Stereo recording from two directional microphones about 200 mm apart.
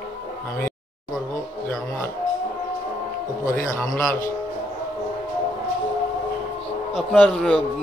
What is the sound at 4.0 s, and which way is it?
Speech, 15° left (ahead or behind).